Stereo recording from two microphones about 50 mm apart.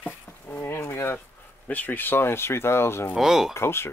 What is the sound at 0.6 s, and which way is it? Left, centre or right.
Speech, left.